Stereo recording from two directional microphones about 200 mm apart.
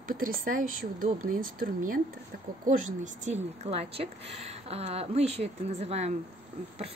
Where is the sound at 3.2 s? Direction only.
35° right (ahead or behind).